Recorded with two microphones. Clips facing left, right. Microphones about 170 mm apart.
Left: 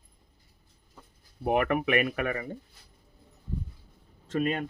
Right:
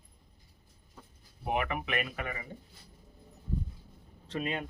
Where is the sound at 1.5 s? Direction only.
50° left (ahead or behind).